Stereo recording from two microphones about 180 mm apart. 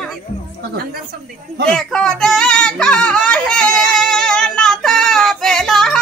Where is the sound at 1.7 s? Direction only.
5° left (ahead or behind).